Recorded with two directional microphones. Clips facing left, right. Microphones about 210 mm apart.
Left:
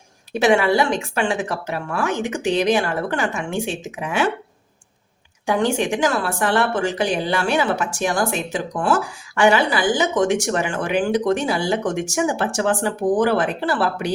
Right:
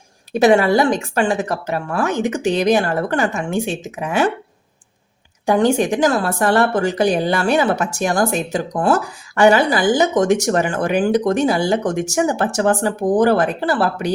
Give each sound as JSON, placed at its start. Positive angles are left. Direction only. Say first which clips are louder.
{"t": 0.3, "sound": "speech", "louder": "right 3 dB", "side_deg": -40}
{"t": 5.5, "sound": "speech", "louder": "right 4 dB", "side_deg": -40}